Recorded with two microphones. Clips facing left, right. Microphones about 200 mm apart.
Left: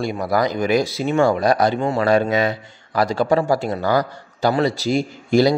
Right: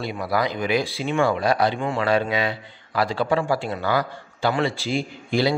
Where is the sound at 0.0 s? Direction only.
45° left (ahead or behind).